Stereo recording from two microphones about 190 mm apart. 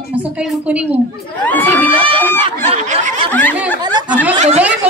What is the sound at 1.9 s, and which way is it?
Speech, 25° right (ahead or behind).